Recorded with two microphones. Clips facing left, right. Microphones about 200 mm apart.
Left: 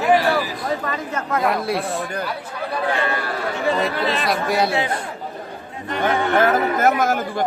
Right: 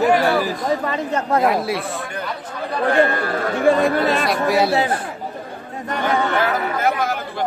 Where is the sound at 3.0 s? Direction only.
50° right (ahead or behind).